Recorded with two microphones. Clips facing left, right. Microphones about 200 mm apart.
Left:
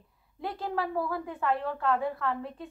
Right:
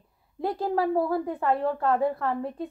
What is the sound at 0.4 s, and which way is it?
Speech, 40° right (ahead or behind).